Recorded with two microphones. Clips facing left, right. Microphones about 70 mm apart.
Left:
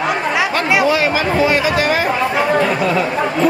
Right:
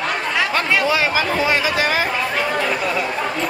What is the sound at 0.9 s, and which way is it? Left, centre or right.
Speech, left.